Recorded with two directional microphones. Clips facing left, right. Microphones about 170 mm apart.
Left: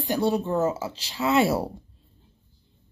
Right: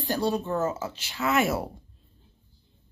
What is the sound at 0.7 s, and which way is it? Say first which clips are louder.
Speech: left 2 dB; 30° left (ahead or behind).